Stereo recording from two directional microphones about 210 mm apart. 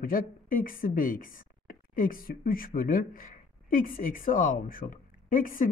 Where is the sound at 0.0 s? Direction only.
40° left (ahead or behind).